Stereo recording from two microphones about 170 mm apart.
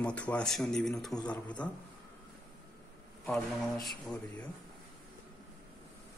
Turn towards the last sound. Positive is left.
turn(degrees=5)  # may be behind; listen again after turning